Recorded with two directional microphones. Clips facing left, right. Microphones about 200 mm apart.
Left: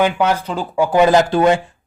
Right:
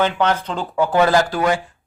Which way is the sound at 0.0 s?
10° left (ahead or behind).